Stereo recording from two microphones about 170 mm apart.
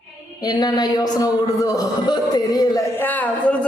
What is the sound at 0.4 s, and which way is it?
A man's voice, 25° left (ahead or behind).